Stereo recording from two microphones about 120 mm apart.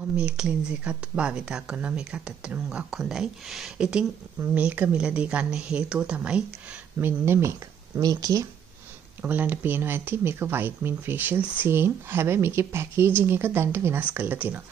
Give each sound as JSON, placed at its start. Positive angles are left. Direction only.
{"t": 0.1, "sound": "speech", "side_deg": -10}
{"t": 7.0, "sound": "speech", "side_deg": -20}
{"t": 9.2, "sound": "speech", "side_deg": -15}